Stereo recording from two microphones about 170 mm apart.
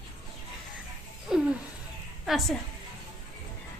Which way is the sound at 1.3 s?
5° right (ahead or behind).